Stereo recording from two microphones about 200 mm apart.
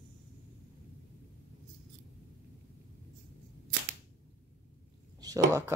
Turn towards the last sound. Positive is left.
turn(degrees=-15)  # may be behind; listen again after turning